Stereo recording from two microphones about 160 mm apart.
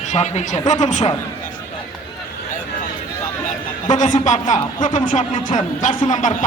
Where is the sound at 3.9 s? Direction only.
50° left (ahead or behind).